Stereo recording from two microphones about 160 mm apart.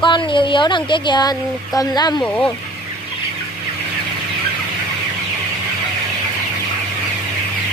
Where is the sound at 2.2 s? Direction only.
5° left (ahead or behind).